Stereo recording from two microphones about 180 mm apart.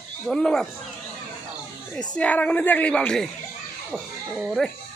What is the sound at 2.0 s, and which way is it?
Speech, 5° left (ahead or behind).